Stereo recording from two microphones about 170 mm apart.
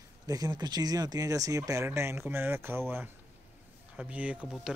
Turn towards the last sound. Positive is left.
turn(degrees=-5)  # may be behind; listen again after turning